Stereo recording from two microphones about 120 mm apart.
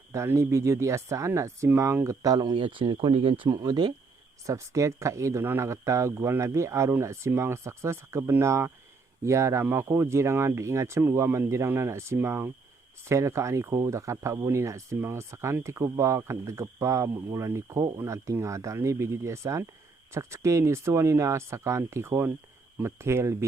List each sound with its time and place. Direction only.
0.1 s speech: 20° right (ahead or behind)